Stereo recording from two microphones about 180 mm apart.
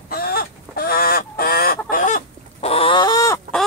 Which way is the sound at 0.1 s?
55° left (ahead or behind).